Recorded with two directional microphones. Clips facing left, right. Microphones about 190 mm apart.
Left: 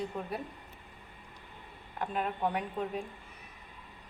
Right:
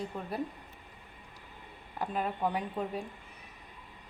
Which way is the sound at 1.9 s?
Centre (ahead or behind).